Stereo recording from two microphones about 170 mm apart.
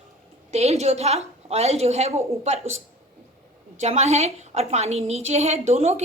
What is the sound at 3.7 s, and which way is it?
A woman's voice, 45° right (ahead or behind).